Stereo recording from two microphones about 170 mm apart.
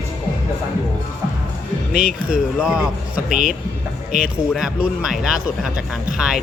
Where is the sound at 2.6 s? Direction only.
5° right (ahead or behind).